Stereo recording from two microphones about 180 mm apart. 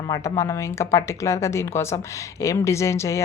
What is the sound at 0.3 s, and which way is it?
Speech, 15° left (ahead or behind).